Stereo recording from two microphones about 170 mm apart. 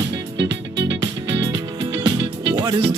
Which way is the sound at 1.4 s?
25° right (ahead or behind).